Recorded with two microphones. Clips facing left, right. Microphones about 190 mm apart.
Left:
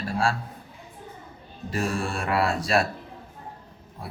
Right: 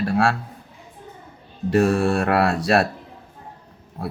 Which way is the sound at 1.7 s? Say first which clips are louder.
Right 10 dB; 65° right (ahead or behind).